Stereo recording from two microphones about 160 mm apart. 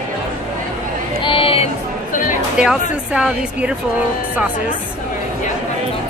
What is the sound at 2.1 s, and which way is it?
Speech, 55° left (ahead or behind).